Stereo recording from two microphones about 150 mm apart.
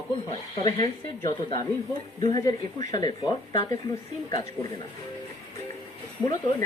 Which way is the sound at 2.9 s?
25° left (ahead or behind).